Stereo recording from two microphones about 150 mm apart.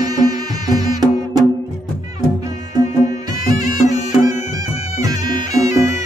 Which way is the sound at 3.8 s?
55° left (ahead or behind).